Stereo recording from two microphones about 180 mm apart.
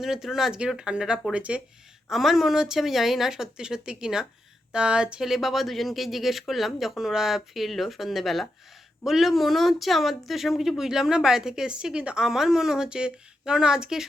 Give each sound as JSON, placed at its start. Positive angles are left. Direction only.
{"t": 0.0, "sound": "speech", "side_deg": 0}